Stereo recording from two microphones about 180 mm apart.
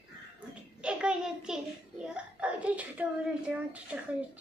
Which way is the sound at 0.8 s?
5° right (ahead or behind).